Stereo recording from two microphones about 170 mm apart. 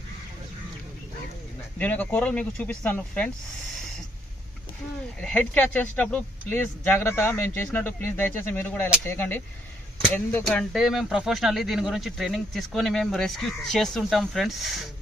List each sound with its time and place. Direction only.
1.8 s speech: 10° left (ahead or behind)
5.2 s speech: 10° left (ahead or behind)